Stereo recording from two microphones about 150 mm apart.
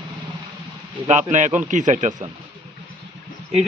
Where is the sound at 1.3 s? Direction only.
55° right (ahead or behind).